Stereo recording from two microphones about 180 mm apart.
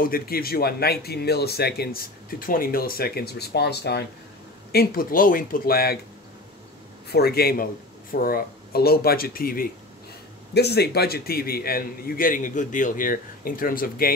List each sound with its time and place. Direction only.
0.0 s speech: 55° left (ahead or behind)
4.7 s speech: 55° left (ahead or behind)
7.1 s speech: 60° left (ahead or behind)
10.5 s speech: 65° left (ahead or behind)